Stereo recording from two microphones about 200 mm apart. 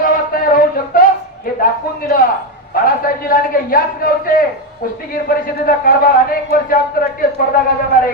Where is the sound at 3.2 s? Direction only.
45° left (ahead or behind).